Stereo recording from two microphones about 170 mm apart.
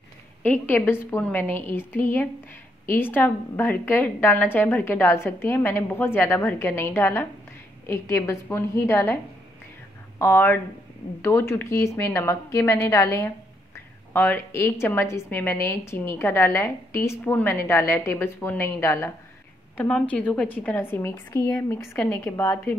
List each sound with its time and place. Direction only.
0.4 s a woman's voice: 10° left (ahead or behind)